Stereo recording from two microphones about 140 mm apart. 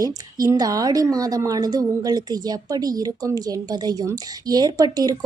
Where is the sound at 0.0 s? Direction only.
25° right (ahead or behind).